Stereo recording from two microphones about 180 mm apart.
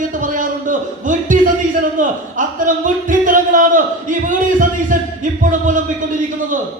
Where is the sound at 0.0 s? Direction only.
45° right (ahead or behind).